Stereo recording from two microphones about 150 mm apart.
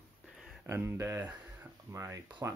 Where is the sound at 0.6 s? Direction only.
15° right (ahead or behind).